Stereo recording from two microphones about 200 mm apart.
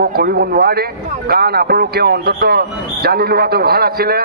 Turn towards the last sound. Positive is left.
turn(degrees=-50)  # may be behind; listen again after turning